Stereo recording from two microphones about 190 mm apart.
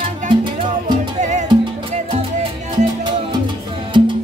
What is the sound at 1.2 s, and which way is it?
Music, 40° right (ahead or behind).